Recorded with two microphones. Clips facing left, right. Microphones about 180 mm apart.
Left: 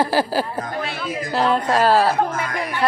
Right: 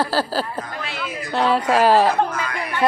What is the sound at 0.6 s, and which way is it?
Speech, 55° left (ahead or behind).